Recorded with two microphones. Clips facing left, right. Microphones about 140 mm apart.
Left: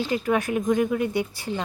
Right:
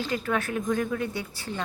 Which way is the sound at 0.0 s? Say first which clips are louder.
Left 4 dB; 15° left (ahead or behind).